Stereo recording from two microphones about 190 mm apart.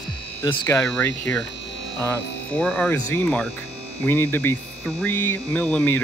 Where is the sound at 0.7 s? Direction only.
5° left (ahead or behind).